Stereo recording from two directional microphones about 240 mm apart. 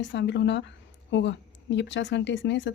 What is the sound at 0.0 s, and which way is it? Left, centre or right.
A woman's voice, left.